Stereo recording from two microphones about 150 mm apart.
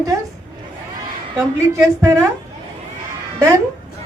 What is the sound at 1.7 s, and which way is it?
Speech, 20° right (ahead or behind).